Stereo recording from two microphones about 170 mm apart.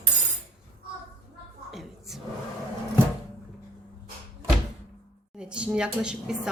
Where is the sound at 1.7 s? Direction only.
Centre (ahead or behind).